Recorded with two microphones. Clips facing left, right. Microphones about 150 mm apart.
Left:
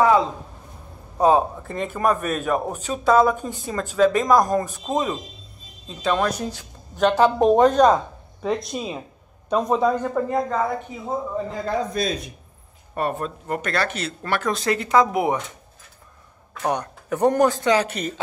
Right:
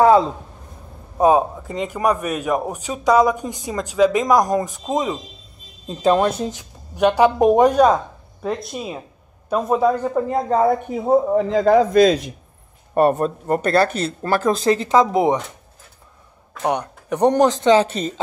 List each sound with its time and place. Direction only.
1.1 s a man's voice: 15° right (ahead or behind)
5.9 s speech: 35° right (ahead or behind)
7.0 s a man's voice: 10° right (ahead or behind)
10.3 s speech: 35° right (ahead or behind)
10.9 s a man's voice: 55° right (ahead or behind); by 12.2 s 90° right
12.9 s speech: 45° right (ahead or behind); by 15.4 s 25° right (ahead or behind)
16.6 s speech: 15° right (ahead or behind)